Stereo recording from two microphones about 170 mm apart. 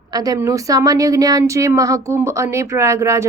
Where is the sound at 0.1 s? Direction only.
20° right (ahead or behind).